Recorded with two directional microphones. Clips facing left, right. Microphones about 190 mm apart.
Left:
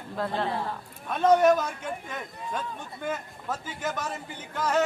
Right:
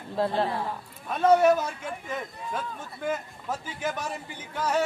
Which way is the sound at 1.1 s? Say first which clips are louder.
Even; 10° right (ahead or behind).